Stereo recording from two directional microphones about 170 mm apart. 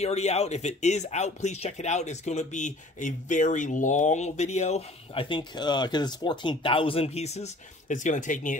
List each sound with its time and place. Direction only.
0.0 s speech: 40° left (ahead or behind)